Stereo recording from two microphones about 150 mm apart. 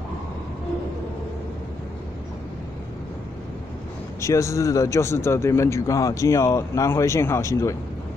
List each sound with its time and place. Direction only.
4.2 s a man's voice: 20° left (ahead or behind)